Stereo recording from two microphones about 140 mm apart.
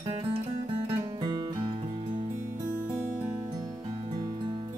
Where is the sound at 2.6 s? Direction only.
15° right (ahead or behind).